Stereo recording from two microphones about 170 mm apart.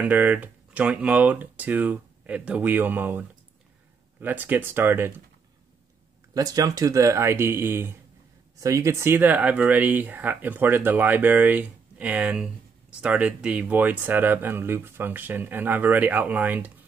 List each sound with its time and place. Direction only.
0.0 s speech: 10° right (ahead or behind)
6.3 s speech: 20° right (ahead or behind)